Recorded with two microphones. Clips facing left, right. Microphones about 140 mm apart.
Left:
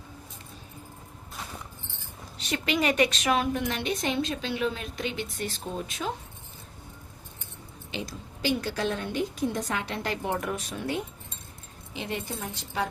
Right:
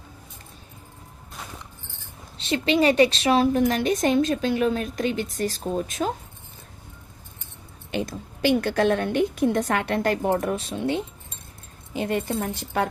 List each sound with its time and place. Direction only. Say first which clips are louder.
2.4 s a woman's voice: right 7 dB; 30° right (ahead or behind); by 6.1 s 45° right (ahead or behind)
7.9 s a woman's voice: right 8 dB; 55° right (ahead or behind); by 11.0 s 25° right (ahead or behind)
11.9 s a woman's voice: right 9 dB; 50° right (ahead or behind)